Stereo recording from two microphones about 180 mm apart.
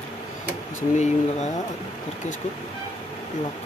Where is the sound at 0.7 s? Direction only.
40° left (ahead or behind).